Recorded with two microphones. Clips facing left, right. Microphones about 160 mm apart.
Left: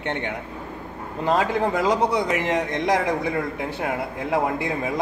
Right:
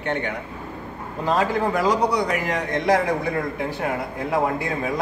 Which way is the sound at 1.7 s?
20° left (ahead or behind).